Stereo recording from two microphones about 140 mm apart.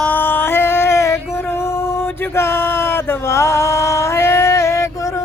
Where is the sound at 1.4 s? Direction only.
15° left (ahead or behind).